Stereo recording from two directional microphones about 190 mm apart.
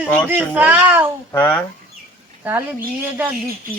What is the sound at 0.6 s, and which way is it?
Speech, 10° right (ahead or behind).